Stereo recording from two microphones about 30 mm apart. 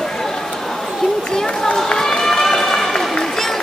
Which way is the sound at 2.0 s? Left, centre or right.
Centre.